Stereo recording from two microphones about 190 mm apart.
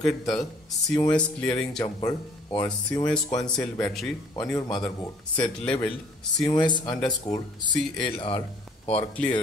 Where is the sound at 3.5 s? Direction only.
10° left (ahead or behind).